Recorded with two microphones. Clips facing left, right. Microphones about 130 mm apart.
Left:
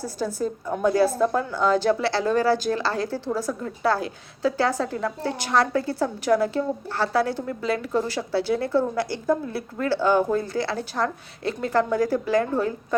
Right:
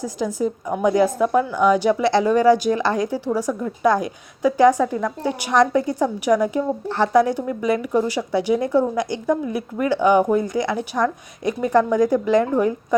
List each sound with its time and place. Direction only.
0.0 s a woman's voice: 15° right (ahead or behind)